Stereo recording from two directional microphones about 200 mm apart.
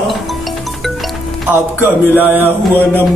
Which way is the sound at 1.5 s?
10° right (ahead or behind).